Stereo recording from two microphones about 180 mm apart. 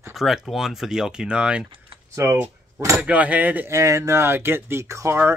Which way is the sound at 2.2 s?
15° right (ahead or behind).